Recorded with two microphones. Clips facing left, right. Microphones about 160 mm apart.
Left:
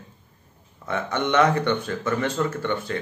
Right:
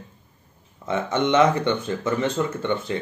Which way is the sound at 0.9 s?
20° right (ahead or behind).